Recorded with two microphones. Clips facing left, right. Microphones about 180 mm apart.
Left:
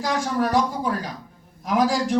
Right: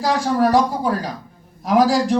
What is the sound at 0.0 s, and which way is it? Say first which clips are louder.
Speech: right 5 dB; 35° right (ahead or behind).